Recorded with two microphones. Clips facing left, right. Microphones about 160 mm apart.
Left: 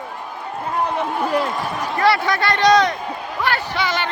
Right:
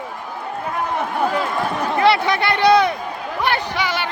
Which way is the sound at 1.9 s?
20° right (ahead or behind).